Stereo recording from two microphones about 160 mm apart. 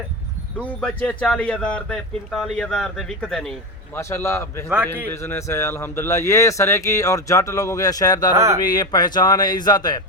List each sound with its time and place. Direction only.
0.6 s speech: 5° left (ahead or behind)
3.9 s a man's voice: 15° left (ahead or behind)